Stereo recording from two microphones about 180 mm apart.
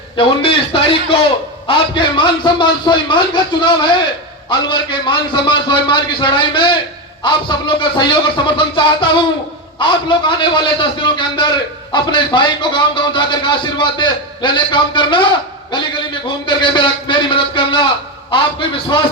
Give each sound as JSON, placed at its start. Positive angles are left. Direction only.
{"t": 0.2, "sound": "a man's voice", "side_deg": 30}